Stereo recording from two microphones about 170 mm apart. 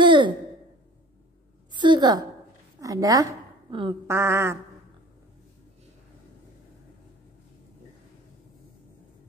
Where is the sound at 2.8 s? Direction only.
20° right (ahead or behind).